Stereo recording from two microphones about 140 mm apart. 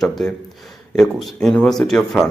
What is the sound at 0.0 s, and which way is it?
Speech, 5° left (ahead or behind).